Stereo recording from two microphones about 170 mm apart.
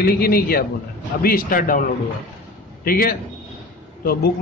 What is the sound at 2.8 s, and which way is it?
Speech, 60° left (ahead or behind).